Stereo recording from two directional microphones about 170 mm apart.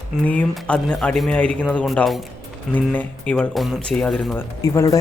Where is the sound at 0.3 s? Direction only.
5° left (ahead or behind).